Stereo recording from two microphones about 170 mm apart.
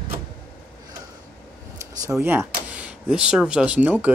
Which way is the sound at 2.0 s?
15° right (ahead or behind).